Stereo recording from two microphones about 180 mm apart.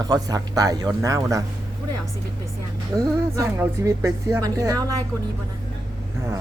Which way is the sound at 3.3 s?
15° right (ahead or behind).